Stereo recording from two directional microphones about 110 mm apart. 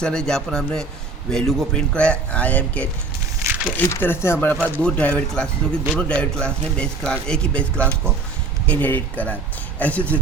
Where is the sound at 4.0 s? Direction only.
20° left (ahead or behind).